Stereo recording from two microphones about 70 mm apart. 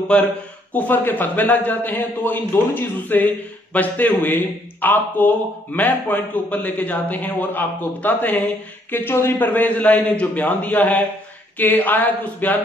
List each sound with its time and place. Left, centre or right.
0.1 s a man's voice: centre